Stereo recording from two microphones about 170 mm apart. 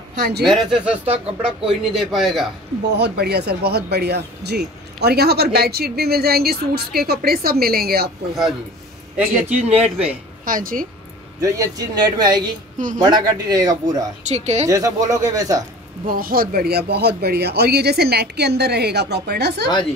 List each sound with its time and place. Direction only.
0.4 s speech: centre (ahead or behind)
2.9 s speech: 75° right (ahead or behind)
9.3 s speech: 45° right (ahead or behind)
10.4 s a woman's voice: 55° right (ahead or behind)
11.4 s speech: 20° right (ahead or behind)
12.7 s speech: 50° right (ahead or behind)
13.1 s speech: 20° right (ahead or behind)
14.2 s speech: 40° right (ahead or behind)
14.7 s speech: 20° right (ahead or behind)
16.1 s speech: 60° right (ahead or behind); by 19.7 s 75° right (ahead or behind)